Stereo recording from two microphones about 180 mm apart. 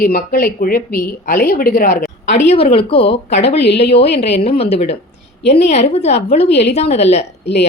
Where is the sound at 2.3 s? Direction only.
35° left (ahead or behind).